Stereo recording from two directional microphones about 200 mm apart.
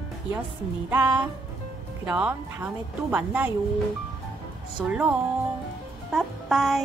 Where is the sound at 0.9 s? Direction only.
15° right (ahead or behind).